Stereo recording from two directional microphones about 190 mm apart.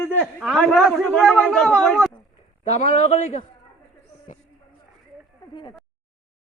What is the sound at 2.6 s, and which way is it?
Speech, 35° left (ahead or behind).